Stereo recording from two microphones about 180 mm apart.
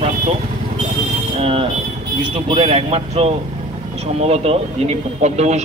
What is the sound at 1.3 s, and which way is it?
Speech, 30° right (ahead or behind).